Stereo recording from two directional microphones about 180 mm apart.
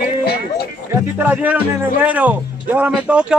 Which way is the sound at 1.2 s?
10° right (ahead or behind).